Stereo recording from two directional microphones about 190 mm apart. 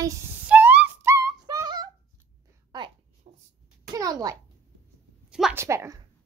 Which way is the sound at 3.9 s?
20° right (ahead or behind).